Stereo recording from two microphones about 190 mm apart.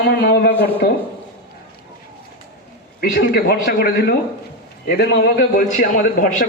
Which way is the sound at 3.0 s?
55° left (ahead or behind).